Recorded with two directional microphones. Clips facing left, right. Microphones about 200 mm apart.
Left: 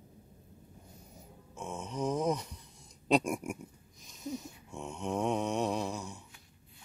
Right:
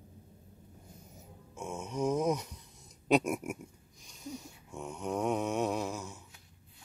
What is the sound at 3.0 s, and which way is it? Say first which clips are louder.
Mantra: right 1 dB; 5° right (ahead or behind).